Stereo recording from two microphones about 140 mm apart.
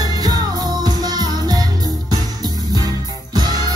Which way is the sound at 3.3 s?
30° right (ahead or behind).